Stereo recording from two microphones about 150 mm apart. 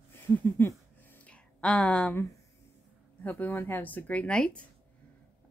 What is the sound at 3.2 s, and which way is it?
Speech, 10° left (ahead or behind).